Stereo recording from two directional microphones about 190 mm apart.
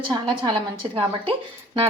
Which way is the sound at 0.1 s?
25° right (ahead or behind).